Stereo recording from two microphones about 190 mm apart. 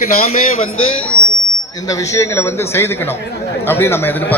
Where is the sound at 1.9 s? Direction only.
15° left (ahead or behind).